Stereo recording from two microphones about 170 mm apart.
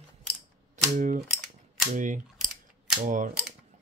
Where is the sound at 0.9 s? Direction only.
50° right (ahead or behind).